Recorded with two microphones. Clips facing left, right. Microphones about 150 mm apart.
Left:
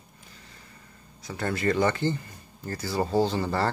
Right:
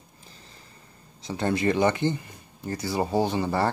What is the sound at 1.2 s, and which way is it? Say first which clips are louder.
Speech: right 3 dB; 20° right (ahead or behind).